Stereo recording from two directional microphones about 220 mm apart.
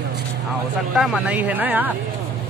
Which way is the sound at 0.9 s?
5° right (ahead or behind).